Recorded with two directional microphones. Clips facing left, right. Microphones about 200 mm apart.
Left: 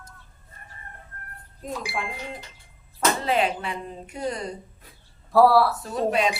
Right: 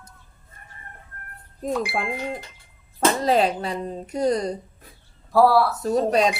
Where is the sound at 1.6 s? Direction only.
60° right (ahead or behind).